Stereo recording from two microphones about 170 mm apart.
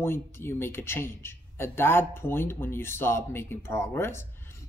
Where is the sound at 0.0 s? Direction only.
15° left (ahead or behind).